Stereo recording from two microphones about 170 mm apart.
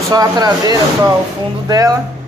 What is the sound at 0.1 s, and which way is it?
Speech, 25° right (ahead or behind).